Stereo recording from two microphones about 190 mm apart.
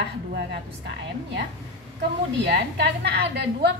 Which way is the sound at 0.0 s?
60° right (ahead or behind).